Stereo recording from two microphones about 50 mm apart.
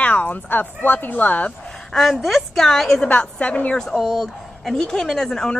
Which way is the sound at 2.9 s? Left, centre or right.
Left.